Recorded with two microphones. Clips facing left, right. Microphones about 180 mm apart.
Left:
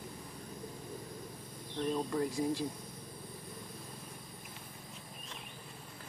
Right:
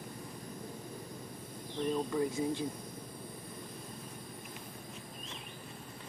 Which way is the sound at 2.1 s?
Centre (ahead or behind).